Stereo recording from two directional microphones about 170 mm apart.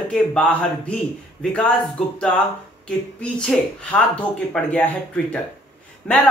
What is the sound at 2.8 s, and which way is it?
A man's voice, 5° left (ahead or behind).